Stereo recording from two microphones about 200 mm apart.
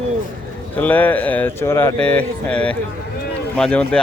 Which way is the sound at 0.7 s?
10° left (ahead or behind).